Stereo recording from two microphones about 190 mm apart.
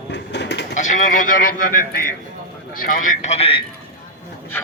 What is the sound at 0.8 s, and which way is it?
Speech, 40° left (ahead or behind).